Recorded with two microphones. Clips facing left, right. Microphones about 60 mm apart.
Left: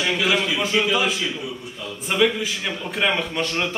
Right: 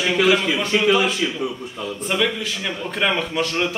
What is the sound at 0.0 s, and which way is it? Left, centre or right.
Speech, centre.